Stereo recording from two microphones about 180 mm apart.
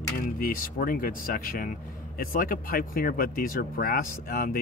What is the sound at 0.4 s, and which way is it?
Speech, 50° left (ahead or behind).